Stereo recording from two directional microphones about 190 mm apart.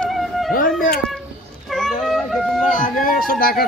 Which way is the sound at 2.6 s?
45° left (ahead or behind).